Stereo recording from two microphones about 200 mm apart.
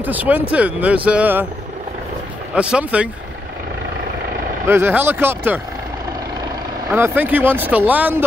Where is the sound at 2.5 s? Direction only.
5° right (ahead or behind).